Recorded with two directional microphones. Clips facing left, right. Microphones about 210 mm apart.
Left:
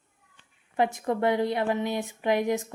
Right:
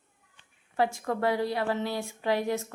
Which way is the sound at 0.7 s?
20° left (ahead or behind).